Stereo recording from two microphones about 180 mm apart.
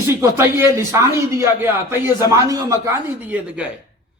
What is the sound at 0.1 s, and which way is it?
Speech, 15° right (ahead or behind).